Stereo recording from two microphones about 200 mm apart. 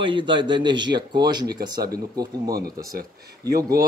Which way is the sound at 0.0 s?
25° right (ahead or behind).